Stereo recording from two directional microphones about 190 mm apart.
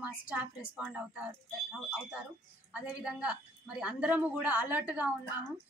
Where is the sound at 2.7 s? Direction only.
5° right (ahead or behind).